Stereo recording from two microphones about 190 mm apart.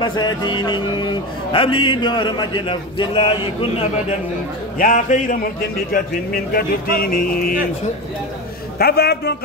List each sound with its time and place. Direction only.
0.0 s a man's voice: 25° left (ahead or behind)
4.7 s speech: 45° left (ahead or behind)
8.7 s a man's voice: 55° left (ahead or behind)